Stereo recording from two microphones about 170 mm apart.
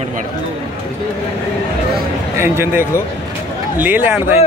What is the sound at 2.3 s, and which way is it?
Speech, 15° right (ahead or behind).